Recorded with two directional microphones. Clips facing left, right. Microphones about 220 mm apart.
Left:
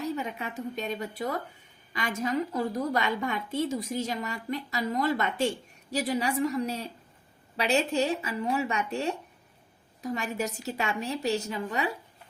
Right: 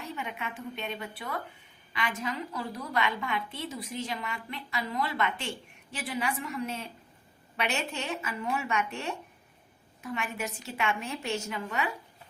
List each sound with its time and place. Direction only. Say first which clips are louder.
0.0 s a woman's voice: left 6 dB; 40° left (ahead or behind)